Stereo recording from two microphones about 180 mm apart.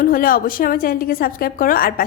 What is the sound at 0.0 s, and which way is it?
A woman's voice, 50° left (ahead or behind).